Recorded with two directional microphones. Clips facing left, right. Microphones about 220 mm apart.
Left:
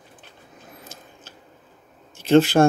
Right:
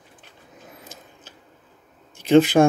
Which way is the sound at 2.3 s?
15° right (ahead or behind).